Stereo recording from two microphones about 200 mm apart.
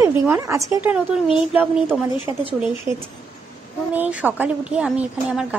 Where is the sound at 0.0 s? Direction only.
15° right (ahead or behind).